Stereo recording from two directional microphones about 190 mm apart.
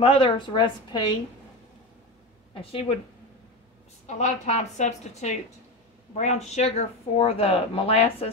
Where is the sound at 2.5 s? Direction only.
30° left (ahead or behind).